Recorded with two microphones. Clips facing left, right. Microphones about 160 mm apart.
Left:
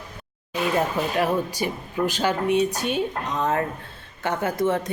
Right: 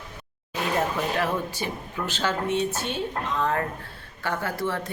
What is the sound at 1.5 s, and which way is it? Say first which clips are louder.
Speech: left 5 dB; 10° left (ahead or behind).